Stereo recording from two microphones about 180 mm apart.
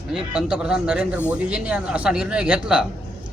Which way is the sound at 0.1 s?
5° right (ahead or behind).